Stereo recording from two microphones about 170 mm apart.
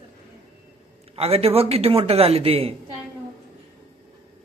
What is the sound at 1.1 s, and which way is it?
Speech, 35° right (ahead or behind).